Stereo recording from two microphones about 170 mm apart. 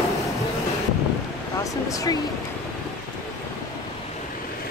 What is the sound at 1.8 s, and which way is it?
Speech, 20° left (ahead or behind).